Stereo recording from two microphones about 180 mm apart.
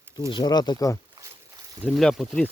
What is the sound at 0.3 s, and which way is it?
Speech, 25° left (ahead or behind).